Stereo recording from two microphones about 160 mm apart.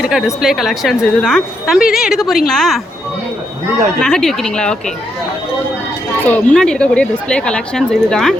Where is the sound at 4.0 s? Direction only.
5° left (ahead or behind).